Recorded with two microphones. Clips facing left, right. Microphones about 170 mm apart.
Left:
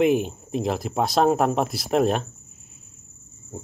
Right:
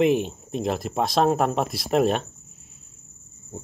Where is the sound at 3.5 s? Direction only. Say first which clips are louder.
Left 1 dB; 5° left (ahead or behind).